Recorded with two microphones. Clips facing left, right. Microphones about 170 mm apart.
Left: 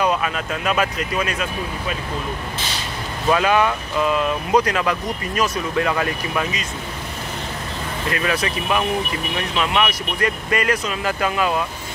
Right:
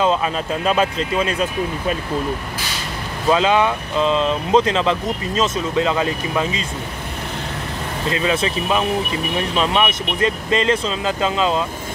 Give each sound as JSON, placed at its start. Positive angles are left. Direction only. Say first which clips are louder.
{"t": 0.0, "sound": "speech", "louder": "right 2 dB", "side_deg": -25}
{"t": 3.3, "sound": "speech", "louder": "right 1 dB", "side_deg": -20}
{"t": 8.1, "sound": "speech", "louder": "right 3 dB", "side_deg": -25}